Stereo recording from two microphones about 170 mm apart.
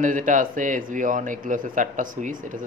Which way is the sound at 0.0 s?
50° right (ahead or behind).